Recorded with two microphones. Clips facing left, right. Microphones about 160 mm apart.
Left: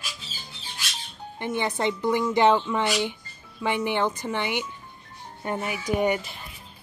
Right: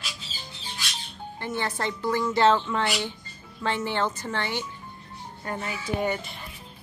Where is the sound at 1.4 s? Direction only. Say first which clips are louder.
Left 3 dB; 20° left (ahead or behind).